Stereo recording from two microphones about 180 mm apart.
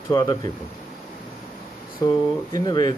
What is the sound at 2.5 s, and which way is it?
Speech, 25° left (ahead or behind).